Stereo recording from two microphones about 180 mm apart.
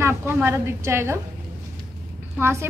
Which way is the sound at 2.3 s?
15° right (ahead or behind).